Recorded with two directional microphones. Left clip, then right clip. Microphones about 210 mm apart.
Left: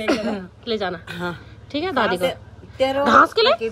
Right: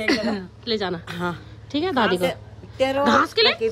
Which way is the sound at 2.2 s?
Centre (ahead or behind).